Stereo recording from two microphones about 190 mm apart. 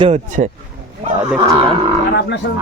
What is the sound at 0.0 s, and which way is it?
Speech, 40° right (ahead or behind).